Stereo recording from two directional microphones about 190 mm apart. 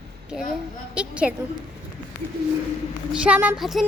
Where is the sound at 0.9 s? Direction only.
5° right (ahead or behind).